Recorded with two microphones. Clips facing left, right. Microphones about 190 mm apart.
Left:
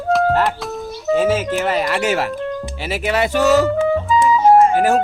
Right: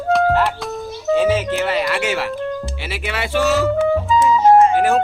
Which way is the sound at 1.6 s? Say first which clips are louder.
Left 1 dB; 45° left (ahead or behind).